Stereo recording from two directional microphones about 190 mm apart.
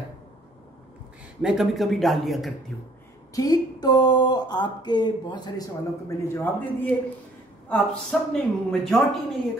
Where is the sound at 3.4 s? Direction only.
20° left (ahead or behind).